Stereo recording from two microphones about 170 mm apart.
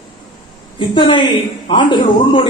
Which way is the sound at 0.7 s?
30° left (ahead or behind).